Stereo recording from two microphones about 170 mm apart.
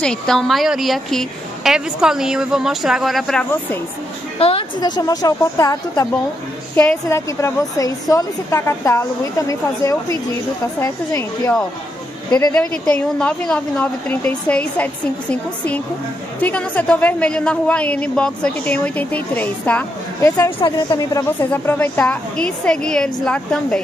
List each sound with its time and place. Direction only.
0.0 s a woman's voice: 5° left (ahead or behind)
4.4 s a woman's voice: 35° left (ahead or behind)
6.7 s a woman's voice: 10° left (ahead or behind)
12.5 s a woman's voice: 5° left (ahead or behind)